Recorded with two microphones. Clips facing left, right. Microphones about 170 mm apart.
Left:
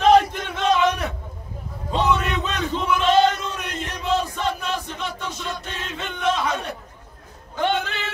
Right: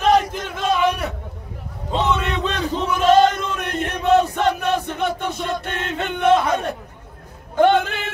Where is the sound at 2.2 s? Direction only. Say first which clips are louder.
Right 2 dB; 30° right (ahead or behind).